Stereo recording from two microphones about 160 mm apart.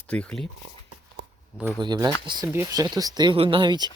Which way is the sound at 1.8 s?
25° right (ahead or behind).